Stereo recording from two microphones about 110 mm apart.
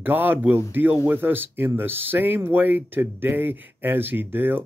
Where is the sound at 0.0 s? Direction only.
20° right (ahead or behind).